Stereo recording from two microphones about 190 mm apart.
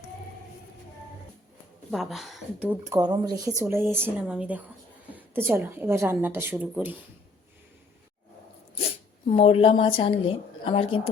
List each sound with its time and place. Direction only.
1.9 s speech: centre (ahead or behind)
3.0 s a woman's voice: 20° right (ahead or behind)
9.3 s a woman's voice: 30° left (ahead or behind)